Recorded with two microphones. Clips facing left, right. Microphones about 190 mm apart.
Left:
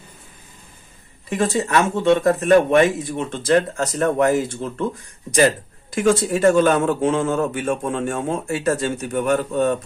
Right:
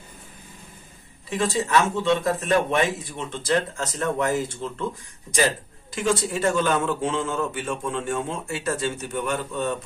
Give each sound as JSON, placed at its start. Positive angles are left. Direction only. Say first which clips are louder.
{"t": 1.3, "sound": "speech", "louder": "left 3 dB", "side_deg": 50}
{"t": 5.9, "sound": "speech", "louder": "left 6 dB", "side_deg": 50}